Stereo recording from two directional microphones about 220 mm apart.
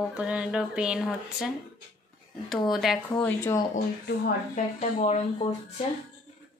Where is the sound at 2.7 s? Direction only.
Centre (ahead or behind).